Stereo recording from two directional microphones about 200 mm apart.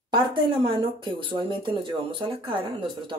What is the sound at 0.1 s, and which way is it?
Speech, 25° right (ahead or behind).